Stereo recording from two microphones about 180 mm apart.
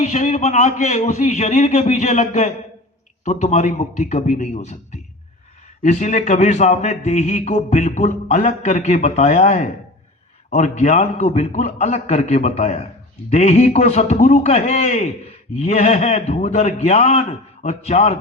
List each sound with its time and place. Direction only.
0.0 s a man's voice: 40° left (ahead or behind)